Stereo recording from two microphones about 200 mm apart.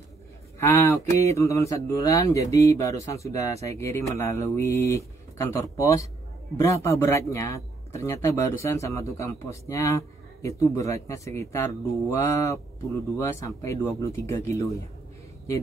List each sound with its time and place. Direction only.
0.6 s a man's voice: 15° left (ahead or behind)